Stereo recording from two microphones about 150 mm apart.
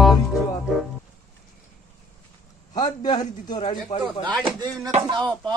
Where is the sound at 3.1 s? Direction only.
30° left (ahead or behind).